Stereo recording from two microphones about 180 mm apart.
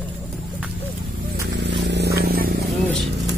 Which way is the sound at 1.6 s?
75° right (ahead or behind).